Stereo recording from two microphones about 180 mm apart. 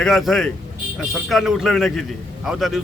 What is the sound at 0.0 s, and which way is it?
A man's voice, centre (ahead or behind).